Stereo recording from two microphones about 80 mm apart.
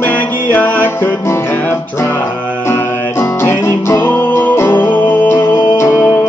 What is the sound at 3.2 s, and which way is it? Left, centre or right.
Music, left.